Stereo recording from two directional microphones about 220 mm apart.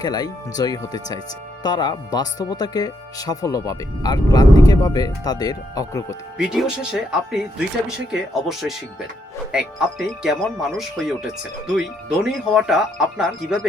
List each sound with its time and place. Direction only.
0.0 s speech: 15° left (ahead or behind)
6.3 s speech: 5° right (ahead or behind)
12.2 s speech: centre (ahead or behind)